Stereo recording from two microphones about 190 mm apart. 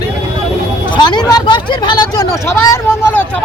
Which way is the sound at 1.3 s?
20° left (ahead or behind).